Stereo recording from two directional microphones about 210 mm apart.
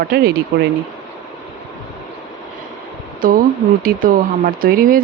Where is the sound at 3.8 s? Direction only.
45° right (ahead or behind).